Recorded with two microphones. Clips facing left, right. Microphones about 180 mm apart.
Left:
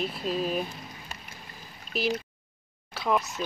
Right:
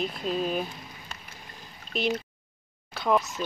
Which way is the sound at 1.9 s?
Centre (ahead or behind).